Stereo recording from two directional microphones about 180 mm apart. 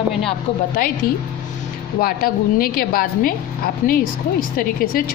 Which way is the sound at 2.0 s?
55° left (ahead or behind).